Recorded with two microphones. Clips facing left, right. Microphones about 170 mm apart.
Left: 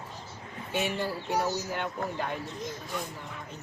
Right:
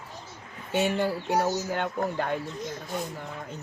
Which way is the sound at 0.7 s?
50° right (ahead or behind).